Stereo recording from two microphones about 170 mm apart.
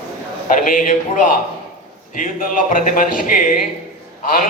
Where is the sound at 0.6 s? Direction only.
55° left (ahead or behind).